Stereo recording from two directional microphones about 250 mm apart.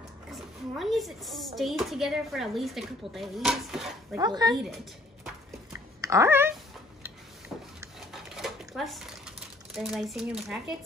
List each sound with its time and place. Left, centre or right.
0.3 s a child's voice: centre
4.2 s speech: centre
5.2 s a sound: centre
9.8 s a child's voice: centre